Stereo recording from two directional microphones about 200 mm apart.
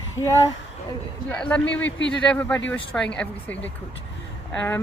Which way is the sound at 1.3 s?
5° left (ahead or behind).